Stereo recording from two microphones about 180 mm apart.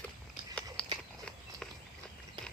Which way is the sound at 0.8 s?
5° left (ahead or behind).